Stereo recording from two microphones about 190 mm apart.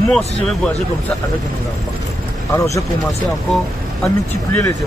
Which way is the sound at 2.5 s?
15° left (ahead or behind).